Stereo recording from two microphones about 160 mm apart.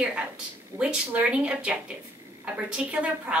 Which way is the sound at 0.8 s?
10° right (ahead or behind).